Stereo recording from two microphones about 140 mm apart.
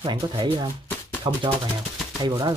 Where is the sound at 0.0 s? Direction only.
35° right (ahead or behind).